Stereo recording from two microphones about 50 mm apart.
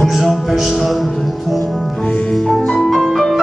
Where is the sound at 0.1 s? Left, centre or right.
Centre.